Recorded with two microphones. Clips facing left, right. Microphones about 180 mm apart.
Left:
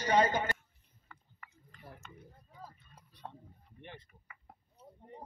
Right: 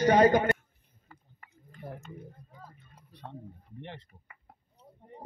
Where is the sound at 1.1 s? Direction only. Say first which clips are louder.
Right 1 dB; 35° right (ahead or behind).